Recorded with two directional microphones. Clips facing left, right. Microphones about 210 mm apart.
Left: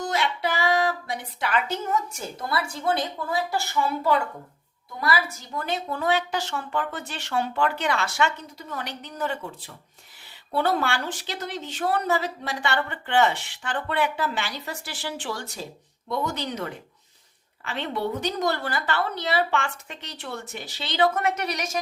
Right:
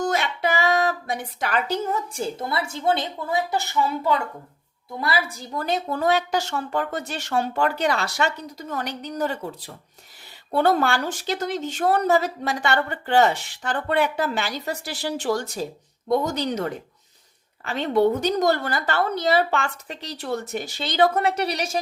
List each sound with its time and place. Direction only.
0.0 s a woman's voice: 50° right (ahead or behind); by 21.8 s 30° right (ahead or behind)